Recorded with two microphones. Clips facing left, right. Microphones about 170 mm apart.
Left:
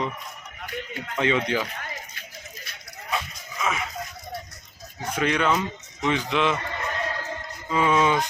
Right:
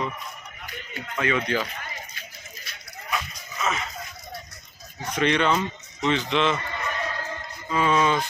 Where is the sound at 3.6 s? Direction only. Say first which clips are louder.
Even; 10° left (ahead or behind).